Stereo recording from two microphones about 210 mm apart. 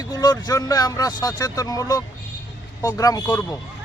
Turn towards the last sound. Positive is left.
turn(degrees=15)  # may be behind; listen again after turning